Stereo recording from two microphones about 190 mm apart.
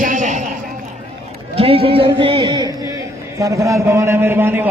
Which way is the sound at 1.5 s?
30° right (ahead or behind).